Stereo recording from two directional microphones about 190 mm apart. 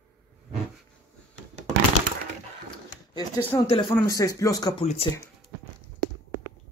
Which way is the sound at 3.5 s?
20° left (ahead or behind).